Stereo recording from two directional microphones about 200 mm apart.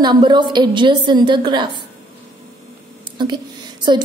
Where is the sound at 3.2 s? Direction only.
20° right (ahead or behind).